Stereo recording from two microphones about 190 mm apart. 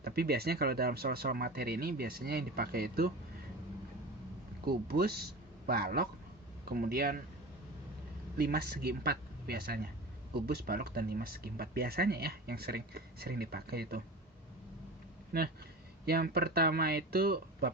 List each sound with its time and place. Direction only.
0.0 s speech: 55° right (ahead or behind)
4.6 s speech: 55° right (ahead or behind)
8.4 s speech: 55° right (ahead or behind)
15.3 s speech: 55° right (ahead or behind)